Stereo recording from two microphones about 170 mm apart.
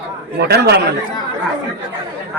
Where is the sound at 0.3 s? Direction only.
70° right (ahead or behind).